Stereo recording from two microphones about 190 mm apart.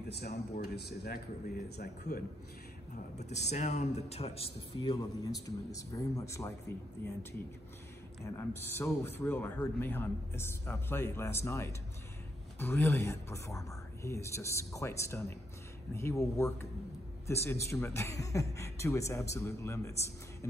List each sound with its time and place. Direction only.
0.1 s speech: 60° left (ahead or behind)
3.2 s speech: 35° left (ahead or behind)
4.7 s a man's voice: 20° left (ahead or behind)
8.4 s a man's voice: 10° left (ahead or behind)